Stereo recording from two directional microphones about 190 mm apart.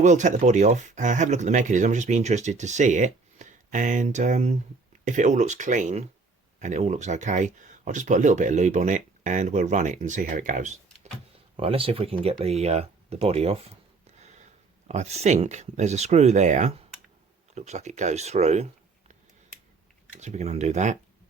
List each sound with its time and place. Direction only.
0.0 s speech: 40° right (ahead or behind)
11.5 s speech: 30° right (ahead or behind)
14.2 s a sound: 35° right (ahead or behind)
14.8 s speech: 35° right (ahead or behind)
20.1 s speech: 35° right (ahead or behind)